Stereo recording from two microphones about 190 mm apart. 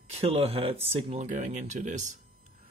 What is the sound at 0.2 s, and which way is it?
Speech, 30° right (ahead or behind).